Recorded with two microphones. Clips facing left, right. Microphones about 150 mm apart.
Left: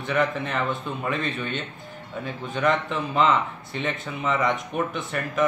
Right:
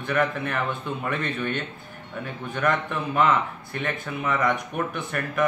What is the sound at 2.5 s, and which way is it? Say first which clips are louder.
A man's voice: left 1 dB; 20° left (ahead or behind).